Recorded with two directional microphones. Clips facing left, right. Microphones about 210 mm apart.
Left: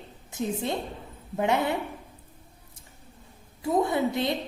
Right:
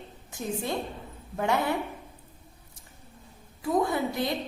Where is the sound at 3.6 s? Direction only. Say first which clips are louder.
Left 2 dB; 25° left (ahead or behind).